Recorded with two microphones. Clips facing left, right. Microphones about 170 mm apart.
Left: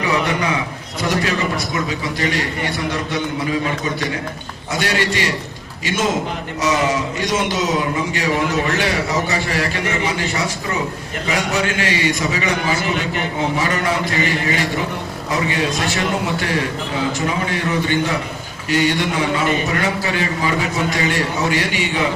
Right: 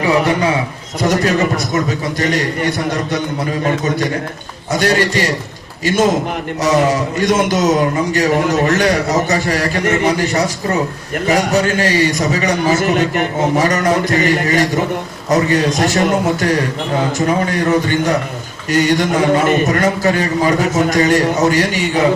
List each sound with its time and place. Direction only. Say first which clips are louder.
1.0 s a man's voice: right 6 dB; 45° right (ahead or behind)
4.8 s a man's voice: right 5 dB; 40° right (ahead or behind)
7.2 s a man's voice: right 6 dB; 50° right (ahead or behind)